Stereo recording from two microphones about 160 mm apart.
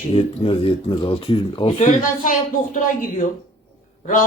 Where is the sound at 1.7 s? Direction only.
55° left (ahead or behind).